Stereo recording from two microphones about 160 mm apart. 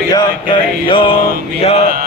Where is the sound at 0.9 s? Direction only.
35° left (ahead or behind).